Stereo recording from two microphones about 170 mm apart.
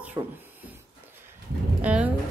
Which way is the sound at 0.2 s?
20° right (ahead or behind).